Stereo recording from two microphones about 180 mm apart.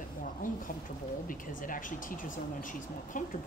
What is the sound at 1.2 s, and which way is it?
Speech, 50° left (ahead or behind).